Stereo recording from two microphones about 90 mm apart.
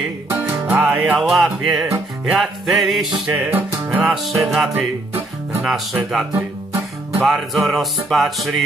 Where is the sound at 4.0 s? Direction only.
Centre (ahead or behind).